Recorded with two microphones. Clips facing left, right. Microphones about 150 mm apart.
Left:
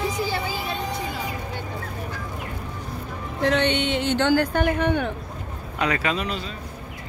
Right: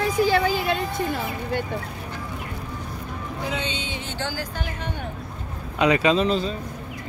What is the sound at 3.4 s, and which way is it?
Speech, 70° left (ahead or behind).